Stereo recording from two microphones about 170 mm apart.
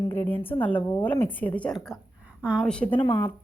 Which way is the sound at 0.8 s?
30° left (ahead or behind).